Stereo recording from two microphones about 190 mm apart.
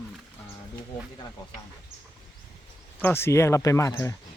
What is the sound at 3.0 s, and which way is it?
Speech, 15° left (ahead or behind).